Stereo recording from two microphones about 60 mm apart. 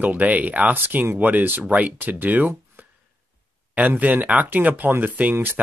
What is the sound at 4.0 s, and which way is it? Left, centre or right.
Speech, right.